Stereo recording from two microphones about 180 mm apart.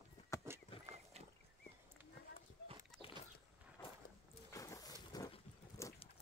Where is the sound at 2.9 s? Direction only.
Centre (ahead or behind).